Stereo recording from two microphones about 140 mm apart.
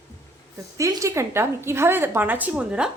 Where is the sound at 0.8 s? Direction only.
25° right (ahead or behind).